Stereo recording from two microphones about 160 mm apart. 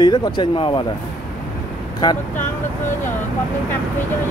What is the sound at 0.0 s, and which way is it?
Speech, 25° left (ahead or behind).